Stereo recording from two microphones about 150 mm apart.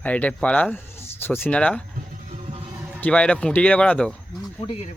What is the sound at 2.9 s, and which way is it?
Speech, 10° left (ahead or behind).